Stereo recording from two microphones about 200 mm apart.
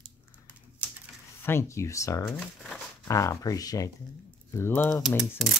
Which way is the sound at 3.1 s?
15° left (ahead or behind).